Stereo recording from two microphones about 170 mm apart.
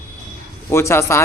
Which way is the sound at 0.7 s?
15° left (ahead or behind).